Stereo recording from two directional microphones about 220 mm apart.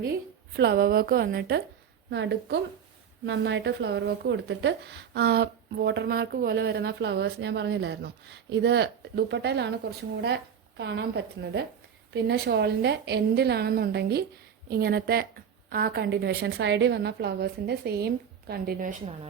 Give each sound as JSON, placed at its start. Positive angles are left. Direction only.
{"t": 0.5, "sound": "a woman's voice", "side_deg": -45}
{"t": 10.8, "sound": "a woman's voice", "side_deg": -50}